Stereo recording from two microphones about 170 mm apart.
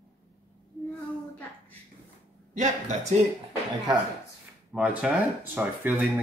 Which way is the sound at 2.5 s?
45° right (ahead or behind).